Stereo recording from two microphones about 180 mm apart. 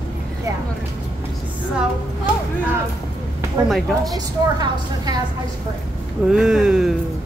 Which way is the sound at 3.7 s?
Centre (ahead or behind).